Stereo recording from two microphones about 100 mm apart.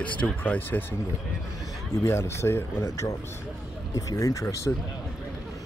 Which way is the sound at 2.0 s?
25° left (ahead or behind).